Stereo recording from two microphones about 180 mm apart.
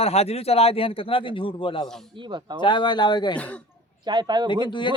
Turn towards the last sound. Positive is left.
turn(degrees=25)  # may be behind; listen again after turning